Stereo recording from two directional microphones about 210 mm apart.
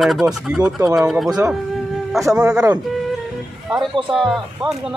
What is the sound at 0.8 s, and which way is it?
Speech, 15° right (ahead or behind).